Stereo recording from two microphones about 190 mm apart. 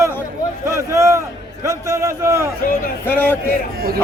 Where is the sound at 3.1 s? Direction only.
10° left (ahead or behind).